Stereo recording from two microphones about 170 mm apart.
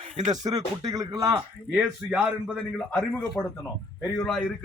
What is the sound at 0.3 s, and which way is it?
Speech, 25° right (ahead or behind).